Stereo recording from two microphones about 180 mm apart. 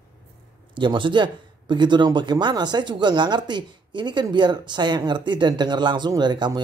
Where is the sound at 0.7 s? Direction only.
25° right (ahead or behind).